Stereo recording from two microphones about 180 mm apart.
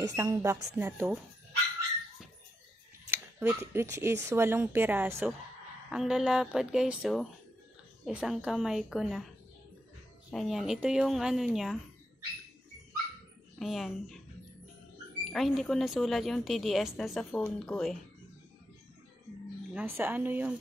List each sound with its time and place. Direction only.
0.0 s speech: 15° right (ahead or behind)
3.1 s speech: 10° right (ahead or behind)
10.3 s speech: centre (ahead or behind)
13.6 s a woman's voice: centre (ahead or behind)
15.2 s speech: centre (ahead or behind)
19.7 s speech: 10° right (ahead or behind)